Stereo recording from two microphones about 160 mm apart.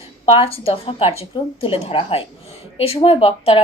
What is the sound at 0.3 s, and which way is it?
Speech, 35° left (ahead or behind).